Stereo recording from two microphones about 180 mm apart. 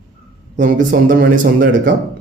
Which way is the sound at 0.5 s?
45° right (ahead or behind).